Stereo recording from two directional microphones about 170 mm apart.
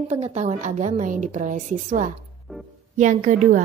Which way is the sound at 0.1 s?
40° right (ahead or behind).